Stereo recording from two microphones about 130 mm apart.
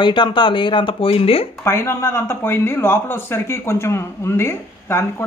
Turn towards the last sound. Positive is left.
turn(degrees=20)  # may be behind; listen again after turning